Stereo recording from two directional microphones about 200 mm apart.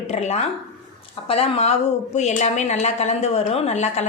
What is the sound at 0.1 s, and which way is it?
A woman's voice, 35° left (ahead or behind).